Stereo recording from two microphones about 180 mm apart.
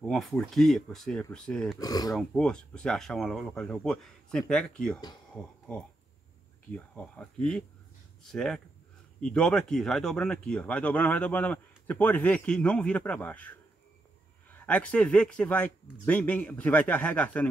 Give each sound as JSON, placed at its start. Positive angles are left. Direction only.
{"t": 0.0, "sound": "speech", "side_deg": 0}
{"t": 1.8, "sound": "speech", "side_deg": 20}
{"t": 2.1, "sound": "speech", "side_deg": 5}